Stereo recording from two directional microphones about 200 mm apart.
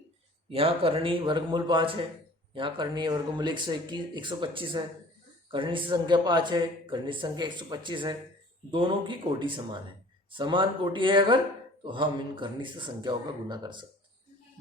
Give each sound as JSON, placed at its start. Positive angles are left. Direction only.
{"t": 0.5, "sound": "speech", "side_deg": -30}